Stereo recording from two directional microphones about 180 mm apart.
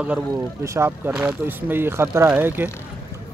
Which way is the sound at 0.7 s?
10° right (ahead or behind).